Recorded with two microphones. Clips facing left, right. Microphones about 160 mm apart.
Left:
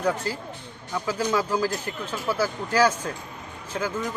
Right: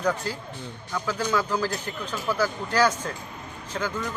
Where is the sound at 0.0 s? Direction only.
5° left (ahead or behind).